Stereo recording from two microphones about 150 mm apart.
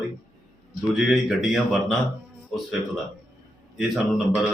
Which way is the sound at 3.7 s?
Centre (ahead or behind).